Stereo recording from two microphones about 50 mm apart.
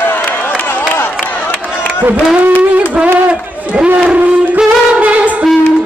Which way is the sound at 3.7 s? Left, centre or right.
Centre.